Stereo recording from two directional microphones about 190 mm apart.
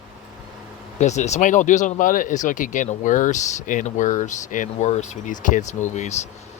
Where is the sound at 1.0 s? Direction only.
35° left (ahead or behind).